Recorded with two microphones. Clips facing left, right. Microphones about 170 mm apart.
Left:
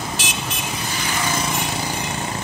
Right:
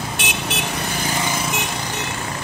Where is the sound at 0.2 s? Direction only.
65° right (ahead or behind).